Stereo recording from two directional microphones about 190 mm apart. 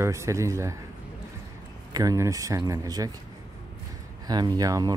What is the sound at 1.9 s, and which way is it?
Speech, 20° right (ahead or behind).